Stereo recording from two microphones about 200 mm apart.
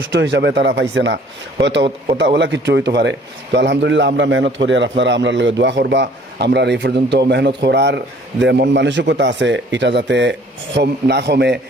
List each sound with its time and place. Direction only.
0.1 s a man's voice: 60° right (ahead or behind)